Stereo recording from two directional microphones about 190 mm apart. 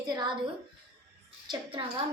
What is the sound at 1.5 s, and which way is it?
Speech, 25° right (ahead or behind).